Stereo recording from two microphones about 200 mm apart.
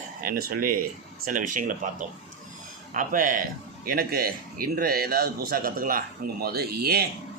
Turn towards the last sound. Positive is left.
turn(degrees=-50)  # may be behind; listen again after turning